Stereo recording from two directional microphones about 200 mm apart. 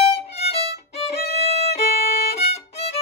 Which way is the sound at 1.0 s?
30° left (ahead or behind).